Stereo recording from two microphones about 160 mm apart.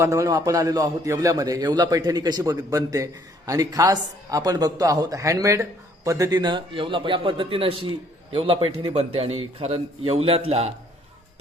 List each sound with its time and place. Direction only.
0.0 s a man's voice: 20° right (ahead or behind); by 10.7 s 40° right (ahead or behind)